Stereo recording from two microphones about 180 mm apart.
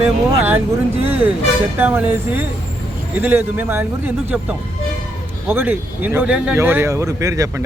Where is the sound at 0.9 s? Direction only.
35° right (ahead or behind).